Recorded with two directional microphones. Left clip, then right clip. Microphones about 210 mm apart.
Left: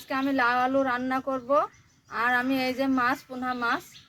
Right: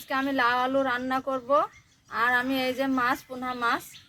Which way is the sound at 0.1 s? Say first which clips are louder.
Even; 5° right (ahead or behind).